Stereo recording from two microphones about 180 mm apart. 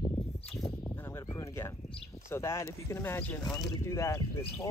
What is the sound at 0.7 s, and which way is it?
Speech, 15° left (ahead or behind).